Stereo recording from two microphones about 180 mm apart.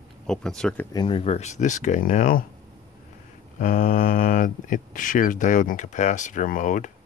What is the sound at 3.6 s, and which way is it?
Speech, 50° left (ahead or behind).